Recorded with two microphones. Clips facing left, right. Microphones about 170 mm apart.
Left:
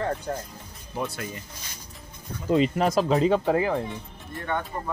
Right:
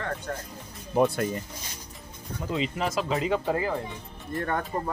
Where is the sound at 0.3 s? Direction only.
25° left (ahead or behind).